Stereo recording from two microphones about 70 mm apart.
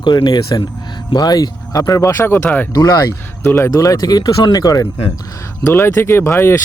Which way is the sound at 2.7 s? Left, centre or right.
Left.